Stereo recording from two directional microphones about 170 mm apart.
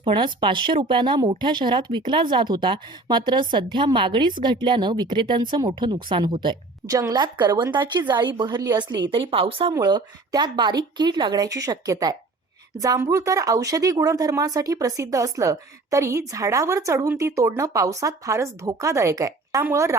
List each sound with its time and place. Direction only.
0.0 s speech: 30° right (ahead or behind)